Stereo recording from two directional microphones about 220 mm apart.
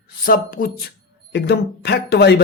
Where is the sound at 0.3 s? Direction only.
40° left (ahead or behind).